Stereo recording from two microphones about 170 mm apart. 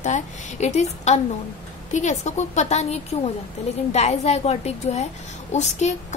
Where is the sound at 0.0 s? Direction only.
45° left (ahead or behind).